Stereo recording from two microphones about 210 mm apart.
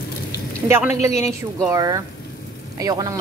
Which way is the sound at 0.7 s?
10° right (ahead or behind).